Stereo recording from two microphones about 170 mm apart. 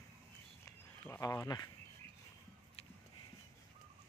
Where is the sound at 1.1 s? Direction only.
15° left (ahead or behind).